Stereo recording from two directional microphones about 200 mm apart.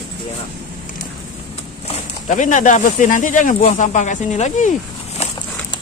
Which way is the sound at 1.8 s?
40° left (ahead or behind).